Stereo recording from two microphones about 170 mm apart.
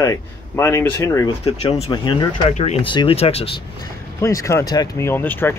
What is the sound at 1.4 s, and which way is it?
Speech, 35° left (ahead or behind).